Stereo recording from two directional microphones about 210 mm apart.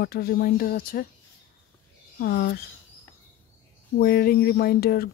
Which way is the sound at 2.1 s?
45° left (ahead or behind).